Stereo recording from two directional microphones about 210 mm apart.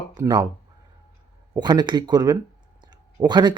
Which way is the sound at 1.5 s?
20° right (ahead or behind).